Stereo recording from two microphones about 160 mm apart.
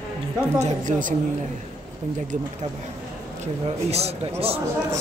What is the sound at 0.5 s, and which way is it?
Speech, 50° right (ahead or behind).